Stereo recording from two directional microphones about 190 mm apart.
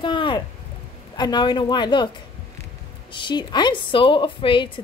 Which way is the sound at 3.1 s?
25° left (ahead or behind).